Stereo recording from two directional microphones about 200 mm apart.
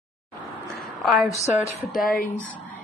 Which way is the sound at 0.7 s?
Centre (ahead or behind).